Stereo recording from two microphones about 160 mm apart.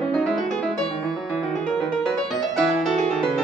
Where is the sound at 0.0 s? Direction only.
5° left (ahead or behind).